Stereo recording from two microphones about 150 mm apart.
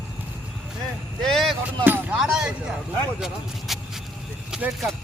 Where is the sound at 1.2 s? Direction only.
5° left (ahead or behind).